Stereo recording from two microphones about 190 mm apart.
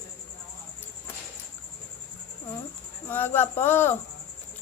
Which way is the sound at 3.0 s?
10° left (ahead or behind).